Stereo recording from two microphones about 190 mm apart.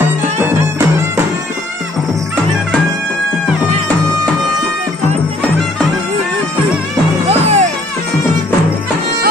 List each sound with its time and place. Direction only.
0.4 s music: 10° right (ahead or behind)
7.2 s music: 35° right (ahead or behind)